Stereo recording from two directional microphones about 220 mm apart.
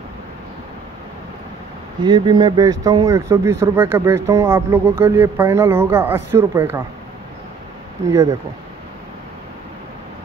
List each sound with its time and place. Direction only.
2.0 s speech: 20° right (ahead or behind)
8.1 s speech: 15° right (ahead or behind)